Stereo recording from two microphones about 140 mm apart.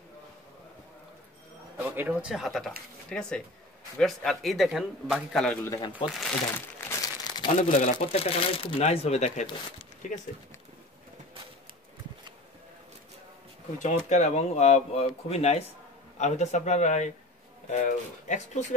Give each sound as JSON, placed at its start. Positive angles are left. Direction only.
{"t": 1.8, "sound": "a man's voice", "side_deg": -15}
{"t": 5.6, "sound": "speech", "side_deg": 20}
{"t": 6.0, "sound": "a man's voice", "side_deg": 0}
{"t": 6.8, "sound": "crumpling", "side_deg": 20}
{"t": 7.8, "sound": "speech", "side_deg": 45}
{"t": 10.0, "sound": "speech", "side_deg": 65}
{"t": 13.8, "sound": "speech", "side_deg": 60}